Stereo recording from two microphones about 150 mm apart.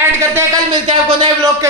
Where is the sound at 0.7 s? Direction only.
35° right (ahead or behind).